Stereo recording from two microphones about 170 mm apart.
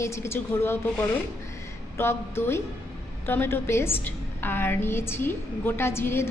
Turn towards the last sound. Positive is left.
turn(degrees=15)  # may be behind; listen again after turning